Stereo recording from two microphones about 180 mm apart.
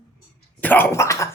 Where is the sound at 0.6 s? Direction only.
10° left (ahead or behind).